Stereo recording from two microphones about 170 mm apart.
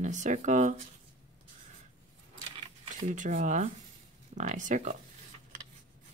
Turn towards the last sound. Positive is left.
turn(degrees=-50)  # may be behind; listen again after turning